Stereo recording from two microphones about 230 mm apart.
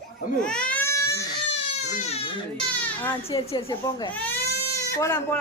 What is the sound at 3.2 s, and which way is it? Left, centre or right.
Speech, left.